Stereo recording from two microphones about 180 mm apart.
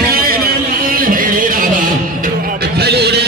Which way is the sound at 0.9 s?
50° right (ahead or behind).